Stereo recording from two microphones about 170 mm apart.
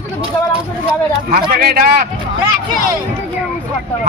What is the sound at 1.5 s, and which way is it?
Speech, 65° right (ahead or behind).